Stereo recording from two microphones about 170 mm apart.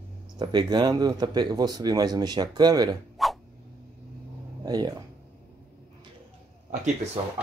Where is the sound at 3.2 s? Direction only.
Centre (ahead or behind).